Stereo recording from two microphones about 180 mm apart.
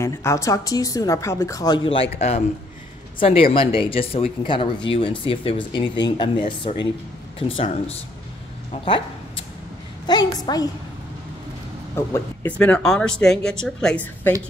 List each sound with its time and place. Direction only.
0.0 s a woman's voice: 15° left (ahead or behind); by 8.0 s 30° left (ahead or behind)
10.0 s speech: 25° left (ahead or behind)
11.9 s speech: 10° left (ahead or behind)